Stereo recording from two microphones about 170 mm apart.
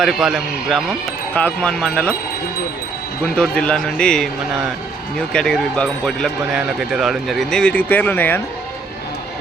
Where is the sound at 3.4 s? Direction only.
5° left (ahead or behind).